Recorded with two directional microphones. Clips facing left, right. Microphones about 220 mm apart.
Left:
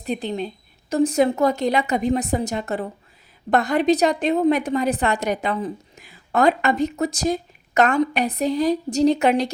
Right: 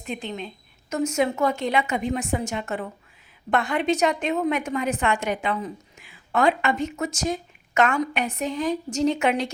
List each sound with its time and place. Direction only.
0.0 s a woman's voice: 35° left (ahead or behind)